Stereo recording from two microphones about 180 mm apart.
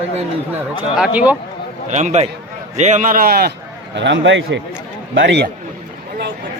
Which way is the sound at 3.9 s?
85° right.